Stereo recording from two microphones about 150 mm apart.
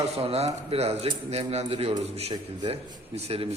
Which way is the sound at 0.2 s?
45° right (ahead or behind).